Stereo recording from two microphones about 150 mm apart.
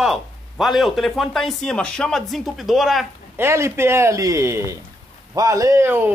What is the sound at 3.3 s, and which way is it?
A man's voice, 15° right (ahead or behind).